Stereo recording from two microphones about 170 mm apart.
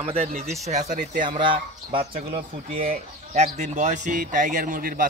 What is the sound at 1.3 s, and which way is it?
Speech, 30° right (ahead or behind).